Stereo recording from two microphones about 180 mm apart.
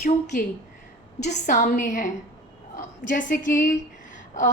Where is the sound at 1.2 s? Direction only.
40° left (ahead or behind).